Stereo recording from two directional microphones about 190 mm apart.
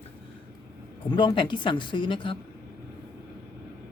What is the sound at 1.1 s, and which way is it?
Speech, 25° left (ahead or behind).